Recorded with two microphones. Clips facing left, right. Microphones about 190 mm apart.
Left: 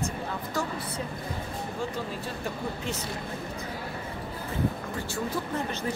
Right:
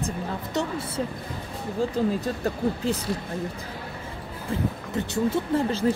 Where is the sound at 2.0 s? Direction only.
40° right (ahead or behind).